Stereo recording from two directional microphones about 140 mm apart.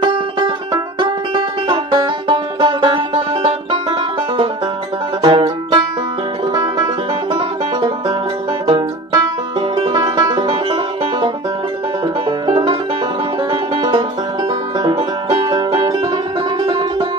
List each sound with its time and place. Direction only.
0.0 s music: 35° right (ahead or behind)
5.2 s music: 40° right (ahead or behind)
6.5 s music: 25° right (ahead or behind)
8.7 s banjo: 25° right (ahead or behind)
9.9 s music: 25° right (ahead or behind)
12.3 s music: 35° right (ahead or behind)
14.8 s music: 30° right (ahead or behind)